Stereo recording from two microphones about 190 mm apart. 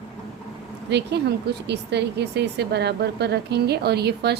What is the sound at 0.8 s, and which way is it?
A woman's voice, 65° right (ahead or behind).